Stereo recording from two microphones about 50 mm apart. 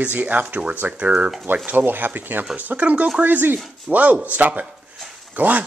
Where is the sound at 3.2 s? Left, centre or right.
Right.